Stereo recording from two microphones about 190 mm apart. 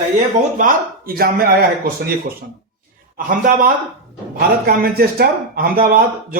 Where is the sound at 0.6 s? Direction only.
50° right (ahead or behind).